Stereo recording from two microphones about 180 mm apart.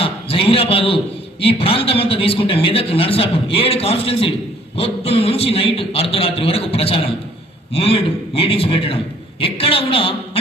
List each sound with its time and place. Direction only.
0.0 s a man's voice: 30° left (ahead or behind)